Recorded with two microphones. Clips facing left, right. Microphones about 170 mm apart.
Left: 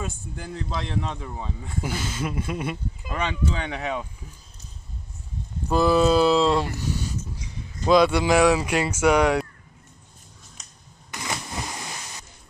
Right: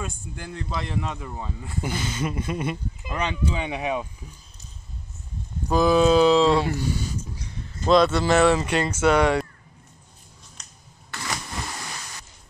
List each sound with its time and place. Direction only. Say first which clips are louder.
0.0 s speech: left 1 dB; centre (ahead or behind)
5.7 s speech: right 1 dB; 5° left (ahead or behind)
7.8 s speech: even; 5° left (ahead or behind)
11.1 s a sound: left 1 dB; 15° left (ahead or behind)